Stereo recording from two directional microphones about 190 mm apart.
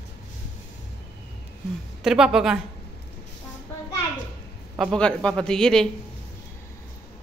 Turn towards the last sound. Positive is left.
turn(degrees=5)  # may be behind; listen again after turning